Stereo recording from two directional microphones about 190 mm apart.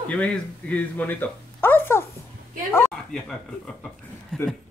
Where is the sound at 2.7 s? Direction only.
5° left (ahead or behind).